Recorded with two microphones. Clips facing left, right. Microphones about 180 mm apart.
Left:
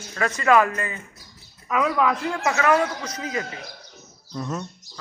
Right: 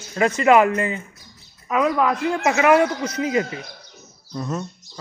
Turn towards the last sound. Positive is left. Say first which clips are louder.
# right 2 dB
turn(degrees=-5)  # may be behind; listen again after turning